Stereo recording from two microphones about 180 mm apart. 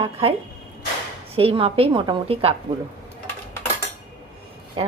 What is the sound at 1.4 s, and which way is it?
A woman's voice, 30° right (ahead or behind).